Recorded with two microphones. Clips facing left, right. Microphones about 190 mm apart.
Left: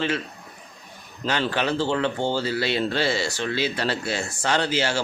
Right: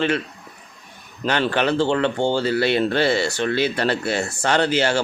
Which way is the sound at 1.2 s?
60° right (ahead or behind).